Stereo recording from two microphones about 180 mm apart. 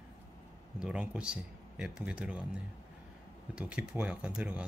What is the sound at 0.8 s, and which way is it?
Speech, 5° right (ahead or behind).